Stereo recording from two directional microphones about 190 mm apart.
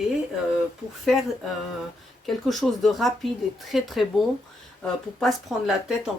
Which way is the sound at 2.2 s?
Centre (ahead or behind).